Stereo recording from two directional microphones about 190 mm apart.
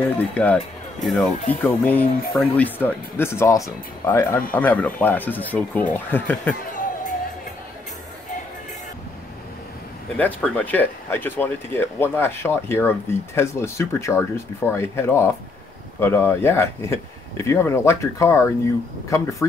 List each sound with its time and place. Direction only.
0.3 s speech: 5° left (ahead or behind)
6.7 s music: 40° left (ahead or behind)
10.1 s speech: 5° left (ahead or behind)